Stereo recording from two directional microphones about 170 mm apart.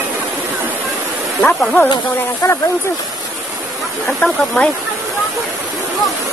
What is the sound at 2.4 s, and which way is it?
Speech, 20° left (ahead or behind).